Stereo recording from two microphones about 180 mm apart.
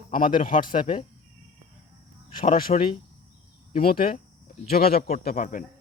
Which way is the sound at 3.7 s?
55° left (ahead or behind).